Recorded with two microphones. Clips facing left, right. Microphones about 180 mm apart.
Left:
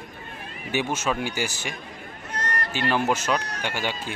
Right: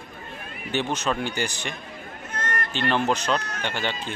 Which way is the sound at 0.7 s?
10° left (ahead or behind).